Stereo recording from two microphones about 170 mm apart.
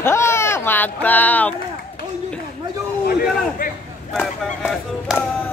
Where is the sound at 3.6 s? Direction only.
55° left (ahead or behind).